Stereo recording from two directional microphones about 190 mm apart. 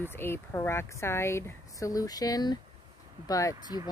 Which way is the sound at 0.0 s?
10° left (ahead or behind).